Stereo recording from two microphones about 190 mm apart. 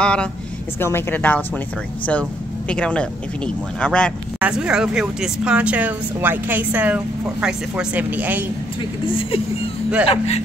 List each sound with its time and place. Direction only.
0.0 s speech: 5° left (ahead or behind)
2.7 s a woman's voice: 5° left (ahead or behind)
9.0 s speech: 30° left (ahead or behind)